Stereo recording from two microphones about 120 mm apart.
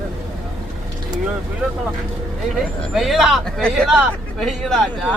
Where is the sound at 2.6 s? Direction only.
Centre (ahead or behind).